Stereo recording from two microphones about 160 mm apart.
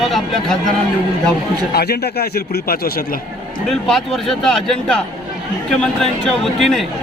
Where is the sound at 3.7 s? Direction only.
Centre (ahead or behind).